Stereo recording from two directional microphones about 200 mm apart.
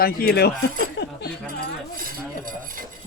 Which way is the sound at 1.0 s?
60° left (ahead or behind).